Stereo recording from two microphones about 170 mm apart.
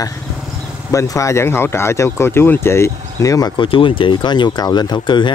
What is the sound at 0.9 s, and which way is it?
Speech, 20° left (ahead or behind).